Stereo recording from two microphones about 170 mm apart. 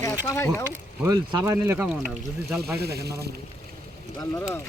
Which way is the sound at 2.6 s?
70° right (ahead or behind).